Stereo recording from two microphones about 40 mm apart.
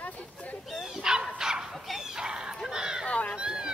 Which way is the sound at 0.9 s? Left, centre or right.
Centre.